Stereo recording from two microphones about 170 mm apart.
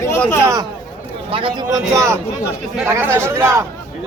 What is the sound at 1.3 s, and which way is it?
Speech, 30° right (ahead or behind).